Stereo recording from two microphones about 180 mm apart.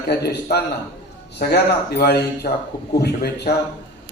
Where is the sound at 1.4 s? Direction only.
60° left (ahead or behind).